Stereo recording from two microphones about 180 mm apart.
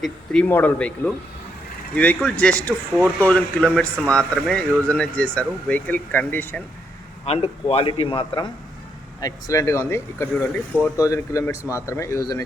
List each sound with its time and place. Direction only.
0.0 s speech: 5° left (ahead or behind)
7.3 s a man's voice: 30° left (ahead or behind)
9.2 s speech: 15° left (ahead or behind)